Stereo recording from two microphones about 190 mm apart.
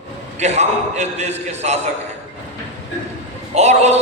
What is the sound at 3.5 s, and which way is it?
Speech, 35° right (ahead or behind).